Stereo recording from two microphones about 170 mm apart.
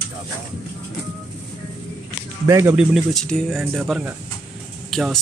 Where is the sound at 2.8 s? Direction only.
5° left (ahead or behind).